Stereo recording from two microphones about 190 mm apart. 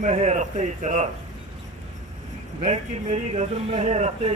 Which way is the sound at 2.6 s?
35° right (ahead or behind).